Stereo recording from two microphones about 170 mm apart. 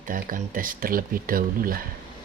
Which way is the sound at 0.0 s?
50° right (ahead or behind).